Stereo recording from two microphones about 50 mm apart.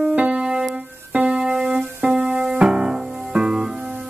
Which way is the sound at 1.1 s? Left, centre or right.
Right.